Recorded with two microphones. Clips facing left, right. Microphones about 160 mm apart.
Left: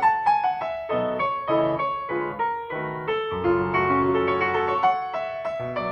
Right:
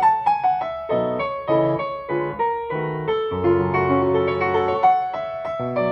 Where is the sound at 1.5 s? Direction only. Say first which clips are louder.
Right 2 dB; 25° right (ahead or behind).